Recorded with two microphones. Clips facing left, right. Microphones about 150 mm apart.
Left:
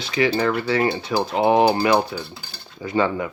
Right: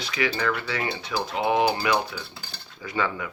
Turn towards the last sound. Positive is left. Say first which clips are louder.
# left 7 dB
turn(degrees=30)  # may be behind; listen again after turning